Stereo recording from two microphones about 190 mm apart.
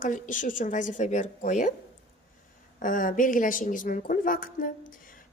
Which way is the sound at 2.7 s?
45° left (ahead or behind).